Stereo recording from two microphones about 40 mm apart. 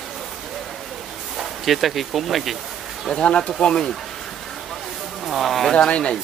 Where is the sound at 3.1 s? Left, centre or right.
Left.